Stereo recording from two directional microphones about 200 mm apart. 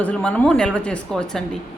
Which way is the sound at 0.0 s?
5° left (ahead or behind).